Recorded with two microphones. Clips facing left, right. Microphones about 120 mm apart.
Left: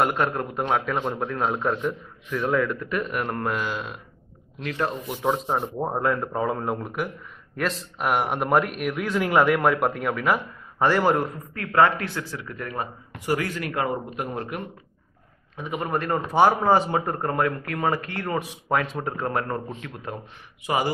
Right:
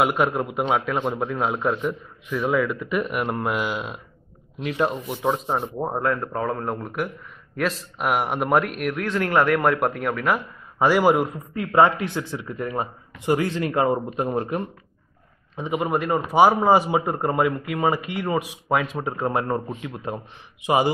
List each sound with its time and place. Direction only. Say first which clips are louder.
0.0 s a man's voice: right 2 dB; 5° right (ahead or behind)
5.0 s a man's voice: right 1 dB; centre (ahead or behind)
11.5 s a man's voice: right 2 dB; 20° right (ahead or behind)
15.5 s a man's voice: right 5 dB; 20° right (ahead or behind)
15.9 s a man's voice: even; 5° right (ahead or behind)
18.7 s speech: right 1 dB; centre (ahead or behind)
20.1 s a man's voice: right 4 dB; 25° right (ahead or behind)